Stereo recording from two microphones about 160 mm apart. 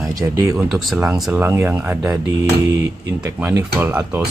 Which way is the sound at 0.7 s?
Centre (ahead or behind).